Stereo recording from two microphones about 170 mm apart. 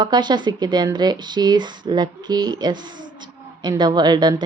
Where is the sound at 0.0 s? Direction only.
25° right (ahead or behind).